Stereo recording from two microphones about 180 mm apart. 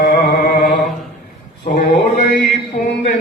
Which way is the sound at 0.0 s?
65° left (ahead or behind).